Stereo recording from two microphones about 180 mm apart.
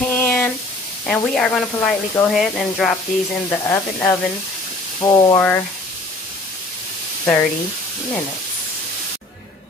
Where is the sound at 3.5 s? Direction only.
15° left (ahead or behind).